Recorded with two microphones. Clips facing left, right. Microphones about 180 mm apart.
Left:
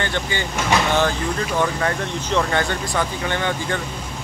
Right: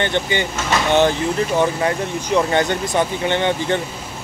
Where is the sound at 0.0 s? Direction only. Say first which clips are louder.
Right 5 dB; 20° right (ahead or behind).